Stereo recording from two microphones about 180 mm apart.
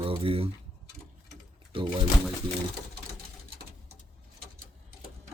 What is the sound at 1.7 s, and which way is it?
Speech, 30° right (ahead or behind).